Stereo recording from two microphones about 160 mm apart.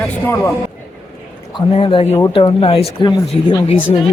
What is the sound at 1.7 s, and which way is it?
Speech, 35° left (ahead or behind).